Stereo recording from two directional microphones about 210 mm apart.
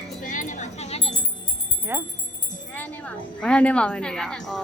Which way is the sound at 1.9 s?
10° right (ahead or behind).